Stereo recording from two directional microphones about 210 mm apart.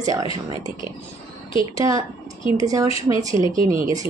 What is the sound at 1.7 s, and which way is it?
Speech, 15° right (ahead or behind).